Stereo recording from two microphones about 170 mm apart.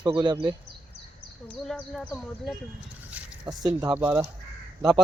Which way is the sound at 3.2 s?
5° right (ahead or behind).